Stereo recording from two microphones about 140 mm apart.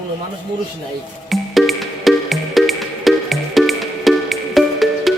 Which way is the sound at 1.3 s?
Centre (ahead or behind).